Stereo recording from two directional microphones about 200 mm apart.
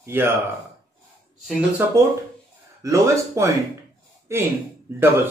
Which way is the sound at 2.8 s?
15° right (ahead or behind).